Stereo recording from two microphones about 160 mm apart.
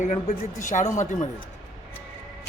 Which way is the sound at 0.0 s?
50° left (ahead or behind).